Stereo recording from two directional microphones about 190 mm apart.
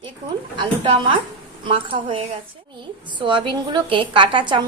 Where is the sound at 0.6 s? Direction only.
25° right (ahead or behind).